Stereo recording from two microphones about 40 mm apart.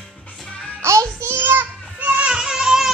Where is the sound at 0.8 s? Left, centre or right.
Right.